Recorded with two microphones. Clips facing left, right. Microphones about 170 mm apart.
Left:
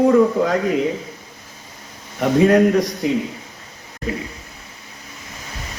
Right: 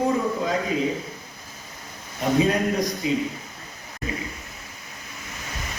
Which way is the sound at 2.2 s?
75° left (ahead or behind).